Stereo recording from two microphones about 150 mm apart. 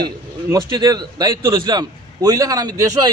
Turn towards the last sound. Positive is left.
turn(degrees=-25)  # may be behind; listen again after turning